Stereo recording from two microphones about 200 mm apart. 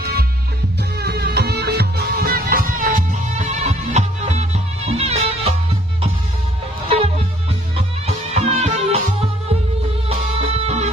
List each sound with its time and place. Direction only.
0.0 s music: 50° right (ahead or behind); by 5.5 s 30° right (ahead or behind)
7.7 s music: 30° right (ahead or behind)